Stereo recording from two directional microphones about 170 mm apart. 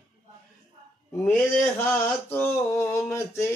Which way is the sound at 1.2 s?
15° left (ahead or behind).